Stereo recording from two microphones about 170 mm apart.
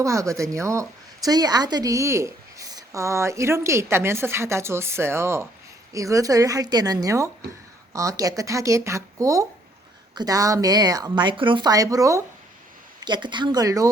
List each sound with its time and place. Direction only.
0.0 s a woman's voice: 20° right (ahead or behind)